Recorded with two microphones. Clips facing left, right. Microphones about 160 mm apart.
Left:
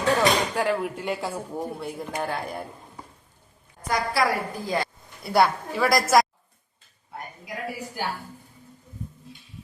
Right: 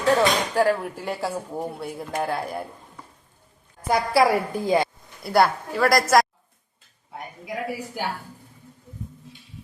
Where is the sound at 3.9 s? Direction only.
30° right (ahead or behind).